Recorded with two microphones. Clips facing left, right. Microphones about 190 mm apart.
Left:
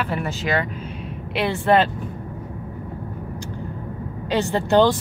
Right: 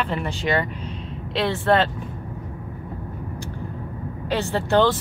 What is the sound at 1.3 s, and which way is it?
Speech, 15° left (ahead or behind).